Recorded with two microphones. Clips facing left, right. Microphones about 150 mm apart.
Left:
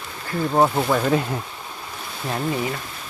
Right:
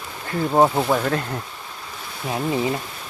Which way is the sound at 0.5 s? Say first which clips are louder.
Right 1 dB; 15° right (ahead or behind).